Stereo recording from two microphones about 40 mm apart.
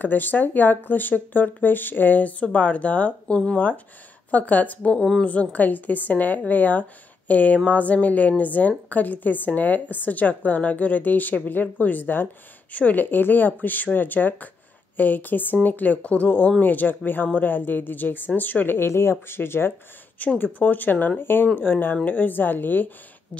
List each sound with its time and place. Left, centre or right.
0.0 s speech: left
2.4 s speech: left
3.5 s a woman's voice: left
20.3 s speech: left
21.2 s speech: left
21.5 s a woman's voice: left